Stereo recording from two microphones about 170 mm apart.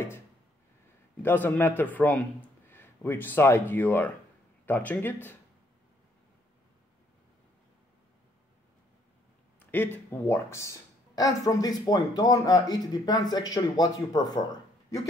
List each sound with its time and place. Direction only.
1.2 s speech: 10° left (ahead or behind)
9.7 s speech: 10° left (ahead or behind)